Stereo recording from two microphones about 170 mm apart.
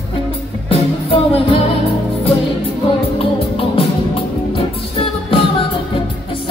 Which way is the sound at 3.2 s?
35° left (ahead or behind).